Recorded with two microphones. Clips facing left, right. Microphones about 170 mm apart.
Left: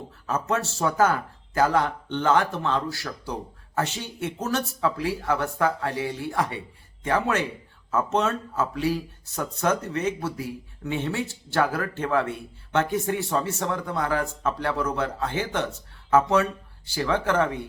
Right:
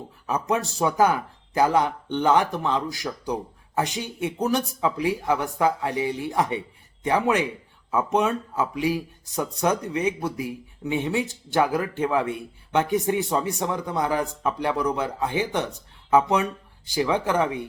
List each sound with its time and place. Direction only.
0.3 s speech: 15° right (ahead or behind)